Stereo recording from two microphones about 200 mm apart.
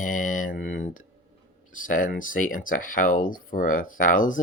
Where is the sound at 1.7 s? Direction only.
40° left (ahead or behind).